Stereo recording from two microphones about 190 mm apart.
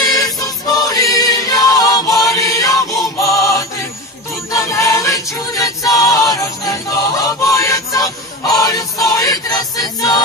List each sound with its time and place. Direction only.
0.0 s choir: 20° left (ahead or behind)
4.5 s music: 15° left (ahead or behind)
8.5 s choir: 20° left (ahead or behind)